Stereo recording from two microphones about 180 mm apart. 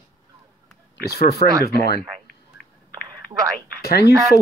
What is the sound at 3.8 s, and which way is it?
Speech, 60° left (ahead or behind).